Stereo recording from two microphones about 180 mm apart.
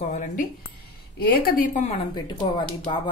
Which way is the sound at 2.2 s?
25° left (ahead or behind).